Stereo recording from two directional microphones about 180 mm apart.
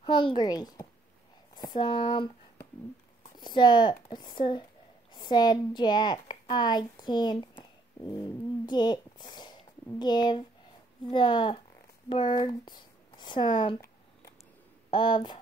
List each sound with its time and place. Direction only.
0.0 s speech: 25° left (ahead or behind)
3.3 s a woman's voice: 25° left (ahead or behind)
14.9 s speech: 25° left (ahead or behind)